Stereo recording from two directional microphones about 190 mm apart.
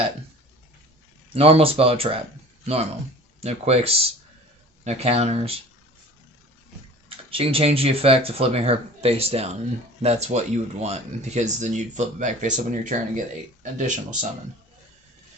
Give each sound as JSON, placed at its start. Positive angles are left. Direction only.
{"t": 1.3, "sound": "speech", "side_deg": -30}
{"t": 3.4, "sound": "speech", "side_deg": -35}
{"t": 7.3, "sound": "speech", "side_deg": -30}